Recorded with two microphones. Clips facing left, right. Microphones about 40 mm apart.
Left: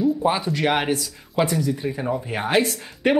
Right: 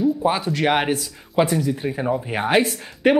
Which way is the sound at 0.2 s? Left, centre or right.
Centre.